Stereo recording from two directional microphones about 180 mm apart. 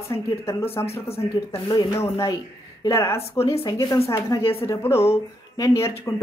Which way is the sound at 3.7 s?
20° left (ahead or behind).